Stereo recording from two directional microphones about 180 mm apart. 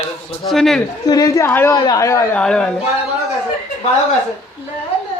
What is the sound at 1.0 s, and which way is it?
Speech, 20° left (ahead or behind).